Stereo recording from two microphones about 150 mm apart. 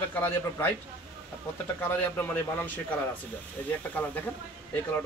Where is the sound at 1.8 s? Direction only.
10° left (ahead or behind).